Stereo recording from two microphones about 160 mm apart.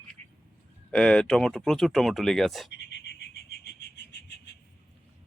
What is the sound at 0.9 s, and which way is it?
Speech, 5° left (ahead or behind).